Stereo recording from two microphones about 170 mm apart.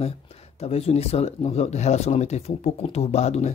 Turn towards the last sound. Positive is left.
turn(degrees=40)  # may be behind; listen again after turning